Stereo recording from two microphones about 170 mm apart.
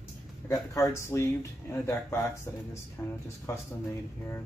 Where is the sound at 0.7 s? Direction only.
15° left (ahead or behind).